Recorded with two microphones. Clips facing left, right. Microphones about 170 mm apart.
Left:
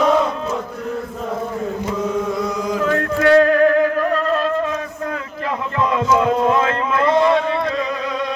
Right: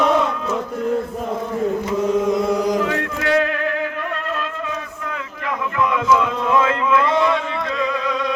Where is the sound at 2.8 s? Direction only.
45° left (ahead or behind).